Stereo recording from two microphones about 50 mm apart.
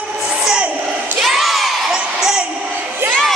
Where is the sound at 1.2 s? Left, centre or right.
Centre.